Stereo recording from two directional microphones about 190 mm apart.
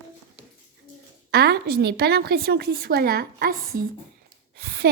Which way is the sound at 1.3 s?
55° right (ahead or behind).